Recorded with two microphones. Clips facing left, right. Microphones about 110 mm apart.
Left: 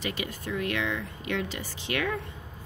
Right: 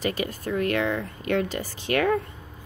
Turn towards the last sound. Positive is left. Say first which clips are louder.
# right 7 dB
turn(degrees=-45)  # may be behind; listen again after turning